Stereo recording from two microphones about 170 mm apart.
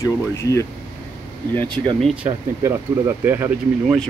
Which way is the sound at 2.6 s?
15° right (ahead or behind).